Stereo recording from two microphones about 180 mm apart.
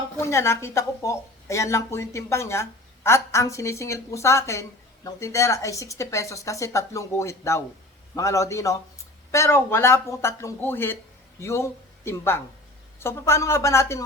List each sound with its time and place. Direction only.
0.2 s a woman's voice: 15° left (ahead or behind)